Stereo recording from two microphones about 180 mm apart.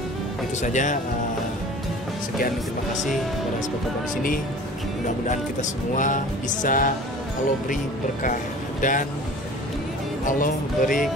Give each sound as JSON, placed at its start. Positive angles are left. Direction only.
{"t": 0.6, "sound": "speech", "side_deg": 45}
{"t": 5.6, "sound": "speech", "side_deg": 45}
{"t": 10.2, "sound": "speech", "side_deg": 50}